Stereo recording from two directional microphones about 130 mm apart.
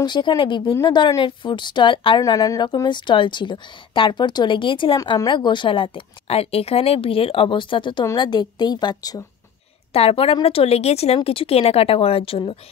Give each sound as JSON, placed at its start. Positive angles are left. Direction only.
{"t": 0.0, "sound": "a woman's voice", "side_deg": 35}
{"t": 2.2, "sound": "a woman's voice", "side_deg": 25}
{"t": 9.9, "sound": "speech", "side_deg": 50}